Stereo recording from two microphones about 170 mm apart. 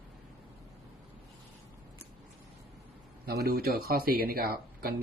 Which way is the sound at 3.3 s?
65° right (ahead or behind).